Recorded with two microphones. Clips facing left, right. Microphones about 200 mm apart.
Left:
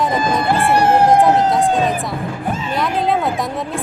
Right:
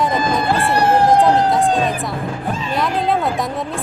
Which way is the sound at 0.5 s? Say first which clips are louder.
Left 2 dB; 20° left (ahead or behind).